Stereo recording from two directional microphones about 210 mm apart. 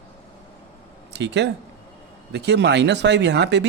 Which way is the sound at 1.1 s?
55° right (ahead or behind).